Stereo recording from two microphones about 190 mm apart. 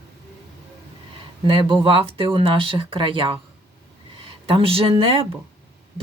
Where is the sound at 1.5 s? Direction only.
25° right (ahead or behind).